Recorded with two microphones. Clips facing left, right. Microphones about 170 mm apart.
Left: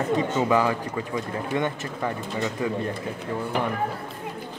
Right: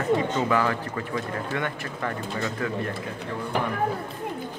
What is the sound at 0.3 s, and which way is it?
Speech, 15° left (ahead or behind).